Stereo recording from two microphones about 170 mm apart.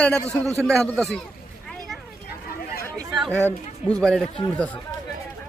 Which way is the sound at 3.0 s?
Centre (ahead or behind).